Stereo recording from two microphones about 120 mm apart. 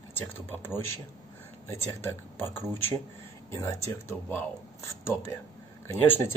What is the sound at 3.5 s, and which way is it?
Speech, 25° left (ahead or behind).